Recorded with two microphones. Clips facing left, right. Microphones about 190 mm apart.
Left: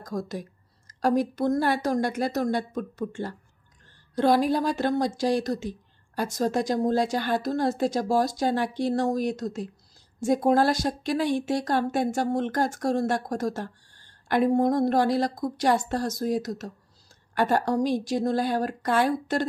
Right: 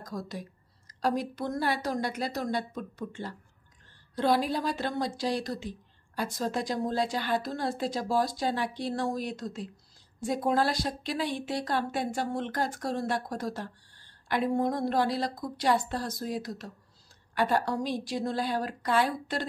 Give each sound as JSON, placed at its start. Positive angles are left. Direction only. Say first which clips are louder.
{"t": 0.0, "sound": "speech", "louder": "left 5 dB", "side_deg": 45}